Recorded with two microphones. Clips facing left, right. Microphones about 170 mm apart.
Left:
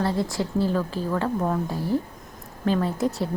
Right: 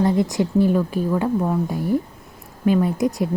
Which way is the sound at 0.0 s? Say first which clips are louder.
Right 6 dB; 15° right (ahead or behind).